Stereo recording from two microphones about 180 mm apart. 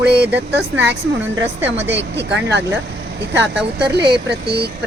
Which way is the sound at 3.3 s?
70° right (ahead or behind).